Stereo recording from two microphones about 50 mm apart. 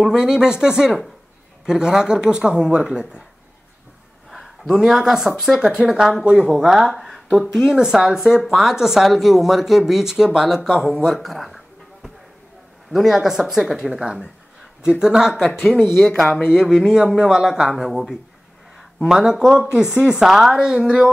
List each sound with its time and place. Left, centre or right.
0.1 s speech: centre
4.3 s speech: centre
6.9 s a sound: centre
7.3 s speech: centre
11.1 s a sound: centre
12.9 s speech: centre
19.7 s speech: right
20.2 s speech: centre